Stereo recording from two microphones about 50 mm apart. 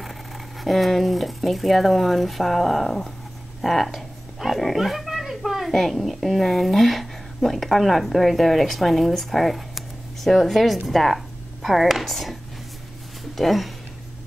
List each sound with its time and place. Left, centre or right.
0.0 s speech: centre
13.4 s speech: centre